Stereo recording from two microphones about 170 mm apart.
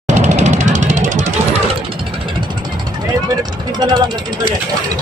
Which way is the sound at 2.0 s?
30° right (ahead or behind).